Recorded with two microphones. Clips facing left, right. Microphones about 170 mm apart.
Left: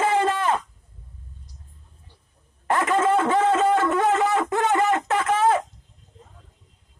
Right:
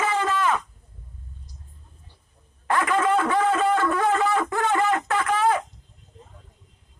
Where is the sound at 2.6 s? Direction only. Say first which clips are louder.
Left 1 dB; 25° left (ahead or behind).